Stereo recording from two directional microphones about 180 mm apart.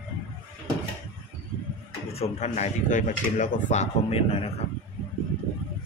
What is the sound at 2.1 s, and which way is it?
Speech, 35° left (ahead or behind).